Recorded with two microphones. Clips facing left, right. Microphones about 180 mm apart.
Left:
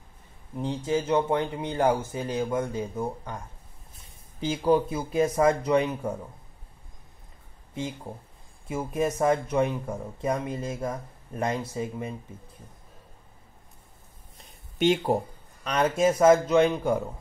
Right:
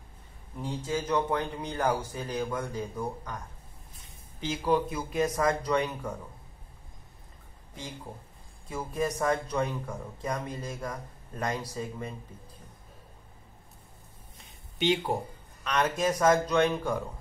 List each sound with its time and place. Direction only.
0.6 s speech: 25° left (ahead or behind)
7.7 s speech: 25° left (ahead or behind)
14.8 s speech: 50° left (ahead or behind)
15.6 s speech: 30° left (ahead or behind)